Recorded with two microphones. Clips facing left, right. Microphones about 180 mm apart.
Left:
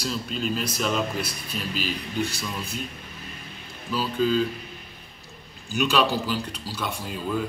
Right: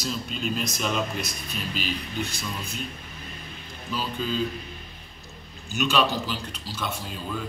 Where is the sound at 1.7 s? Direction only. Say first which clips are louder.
Left 2 dB; 40° left (ahead or behind).